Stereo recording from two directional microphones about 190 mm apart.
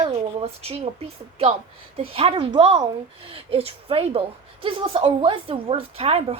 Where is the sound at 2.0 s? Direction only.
30° right (ahead or behind).